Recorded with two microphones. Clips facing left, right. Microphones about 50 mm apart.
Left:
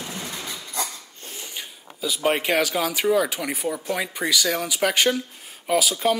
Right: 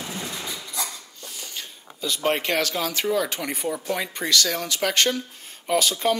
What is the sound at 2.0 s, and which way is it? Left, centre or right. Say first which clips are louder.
Speech: left 1 dB; centre.